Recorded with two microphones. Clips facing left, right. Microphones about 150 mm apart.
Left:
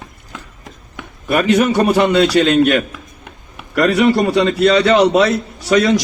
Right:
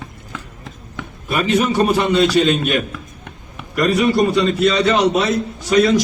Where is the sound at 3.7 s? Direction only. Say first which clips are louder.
Left 3 dB; 80° left.